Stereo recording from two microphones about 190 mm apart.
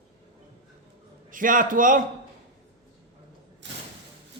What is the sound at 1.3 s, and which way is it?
Speech, 45° right (ahead or behind).